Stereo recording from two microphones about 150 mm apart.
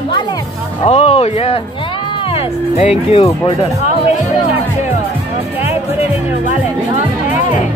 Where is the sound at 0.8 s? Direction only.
45° left (ahead or behind).